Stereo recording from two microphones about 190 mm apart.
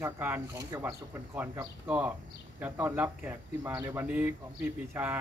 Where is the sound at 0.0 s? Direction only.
10° right (ahead or behind).